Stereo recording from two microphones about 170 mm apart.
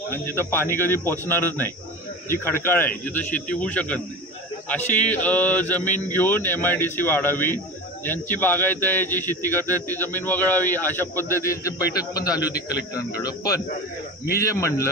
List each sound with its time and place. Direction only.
0.1 s a man's voice: 15° left (ahead or behind)